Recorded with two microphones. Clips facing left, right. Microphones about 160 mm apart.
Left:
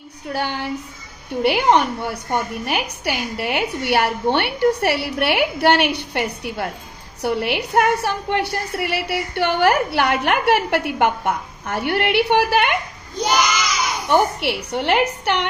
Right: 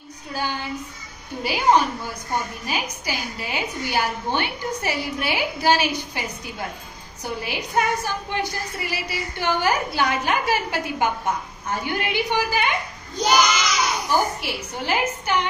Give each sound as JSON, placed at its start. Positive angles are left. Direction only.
{"t": 0.3, "sound": "a woman's voice", "side_deg": 65}
{"t": 14.0, "sound": "a woman's voice", "side_deg": 65}